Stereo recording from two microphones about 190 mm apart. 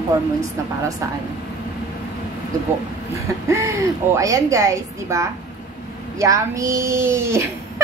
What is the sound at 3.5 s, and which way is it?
A woman's voice, 15° right (ahead or behind).